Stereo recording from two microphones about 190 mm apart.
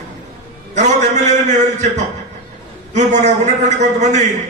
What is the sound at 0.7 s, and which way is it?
A man's voice, 40° right (ahead or behind).